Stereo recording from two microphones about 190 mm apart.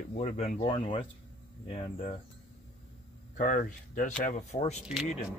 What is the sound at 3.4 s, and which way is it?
Speech, 45° left (ahead or behind).